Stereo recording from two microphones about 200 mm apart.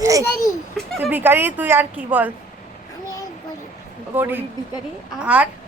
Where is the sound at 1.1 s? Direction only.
10° right (ahead or behind).